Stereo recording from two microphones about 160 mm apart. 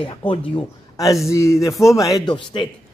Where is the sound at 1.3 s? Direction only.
20° left (ahead or behind).